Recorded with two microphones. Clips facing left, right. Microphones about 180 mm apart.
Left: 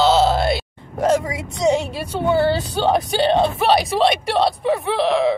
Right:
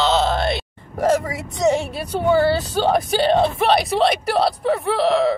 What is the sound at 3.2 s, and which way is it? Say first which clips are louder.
Speech: right 1 dB; centre (ahead or behind).